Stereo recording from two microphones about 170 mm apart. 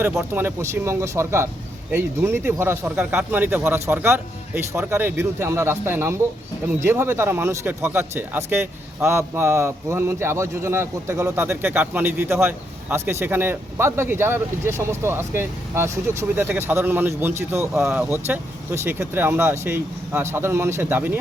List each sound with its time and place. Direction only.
0.0 s speech: centre (ahead or behind)
0.3 s speech: 15° right (ahead or behind)